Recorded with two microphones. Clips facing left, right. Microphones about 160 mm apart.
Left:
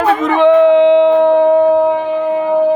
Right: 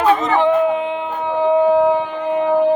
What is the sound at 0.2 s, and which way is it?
Howl, 60° left (ahead or behind).